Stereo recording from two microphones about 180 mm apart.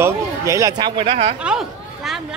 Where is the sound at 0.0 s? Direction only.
15° right (ahead or behind).